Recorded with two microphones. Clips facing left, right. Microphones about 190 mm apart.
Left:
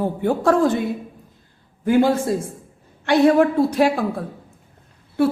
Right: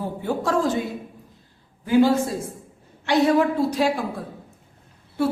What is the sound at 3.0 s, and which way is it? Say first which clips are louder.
Music: left 4 dB; 55° left (ahead or behind).